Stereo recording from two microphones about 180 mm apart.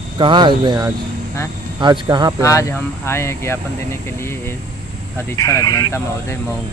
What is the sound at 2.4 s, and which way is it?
Speech, 15° left (ahead or behind).